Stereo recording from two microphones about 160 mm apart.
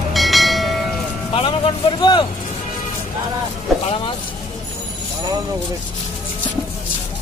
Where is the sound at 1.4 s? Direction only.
30° left (ahead or behind).